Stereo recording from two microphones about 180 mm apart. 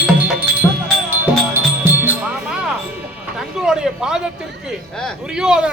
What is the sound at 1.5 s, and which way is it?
Music, 10° right (ahead or behind).